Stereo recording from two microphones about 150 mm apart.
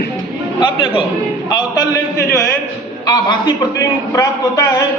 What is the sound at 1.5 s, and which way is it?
Speech, 25° left (ahead or behind).